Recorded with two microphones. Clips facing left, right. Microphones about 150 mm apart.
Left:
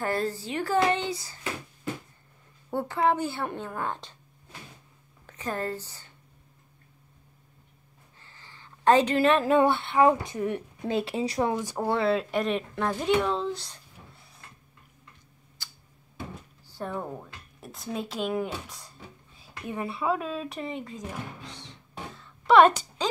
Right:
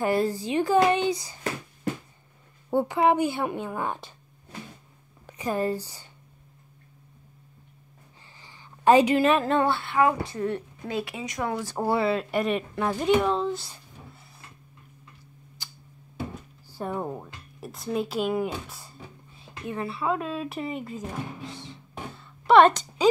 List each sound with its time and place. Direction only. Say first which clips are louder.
0.0 s a woman's voice: right 4 dB; 15° right (ahead or behind)
2.7 s a woman's voice: right 4 dB; 15° right (ahead or behind)
5.2 s speech: right 5 dB; 10° right (ahead or behind)
8.4 s speech: right 2 dB; 15° right (ahead or behind); by 11.4 s 30° left (ahead or behind)
11.4 s speech: left 2 dB; 20° left (ahead or behind)
11.7 s speech: right 1 dB; 5° right (ahead or behind)
16.6 s speech: right 3 dB; 10° right (ahead or behind)
17.6 s speech: right 5 dB; centre (ahead or behind)
19.4 s speech: right 1 dB; 15° left (ahead or behind)
20.1 s speech: right 1 dB; centre (ahead or behind)
21.5 s a sound: right 5 dB; 5° right (ahead or behind)